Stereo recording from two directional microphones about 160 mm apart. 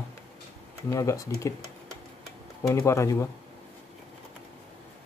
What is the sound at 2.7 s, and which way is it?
Speech, 15° left (ahead or behind).